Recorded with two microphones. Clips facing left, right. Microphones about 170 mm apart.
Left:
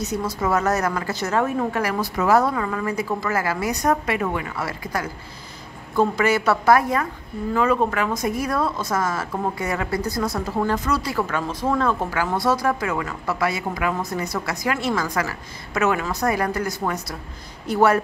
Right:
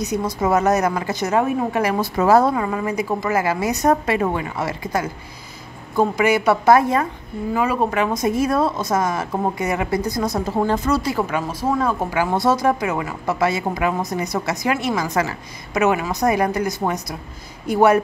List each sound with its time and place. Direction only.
0.0 s a woman's voice: 15° right (ahead or behind)
7.5 s a woman's voice: 10° right (ahead or behind)